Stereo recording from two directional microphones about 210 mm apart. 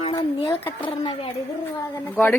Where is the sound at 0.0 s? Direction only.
25° left (ahead or behind).